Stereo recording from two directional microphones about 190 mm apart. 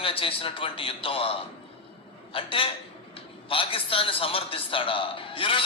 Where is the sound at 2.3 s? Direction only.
30° left (ahead or behind).